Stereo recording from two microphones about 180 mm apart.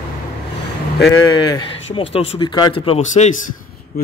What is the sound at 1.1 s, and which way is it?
Speech, 20° left (ahead or behind).